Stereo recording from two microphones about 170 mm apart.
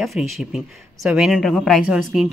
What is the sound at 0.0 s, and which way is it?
Speech, centre (ahead or behind).